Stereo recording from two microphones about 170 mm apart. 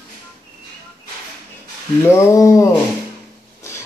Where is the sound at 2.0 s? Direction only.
15° left (ahead or behind).